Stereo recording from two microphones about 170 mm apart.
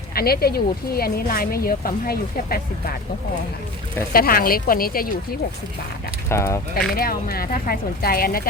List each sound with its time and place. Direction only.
0.1 s speech: 65° left (ahead or behind)
4.1 s speech: 60° left (ahead or behind)
6.2 s speech: 15° left (ahead or behind)
6.9 s speech: 60° left (ahead or behind)